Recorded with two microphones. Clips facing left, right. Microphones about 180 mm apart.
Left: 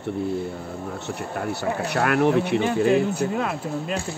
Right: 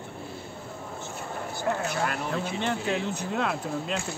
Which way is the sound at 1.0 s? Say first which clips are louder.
Left 7 dB; 70° left (ahead or behind).